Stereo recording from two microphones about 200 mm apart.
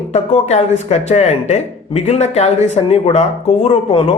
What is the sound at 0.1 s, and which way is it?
Speech, 35° left (ahead or behind).